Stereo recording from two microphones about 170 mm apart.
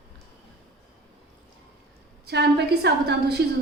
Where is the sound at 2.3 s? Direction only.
80° right.